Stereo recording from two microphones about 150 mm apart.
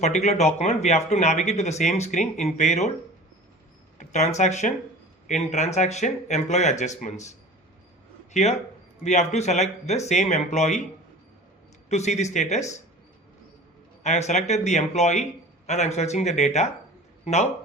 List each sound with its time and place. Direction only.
0.0 s speech: 50° left (ahead or behind)
3.9 s speech: 50° left (ahead or behind)
11.9 s speech: 50° left (ahead or behind)
14.0 s speech: 50° left (ahead or behind)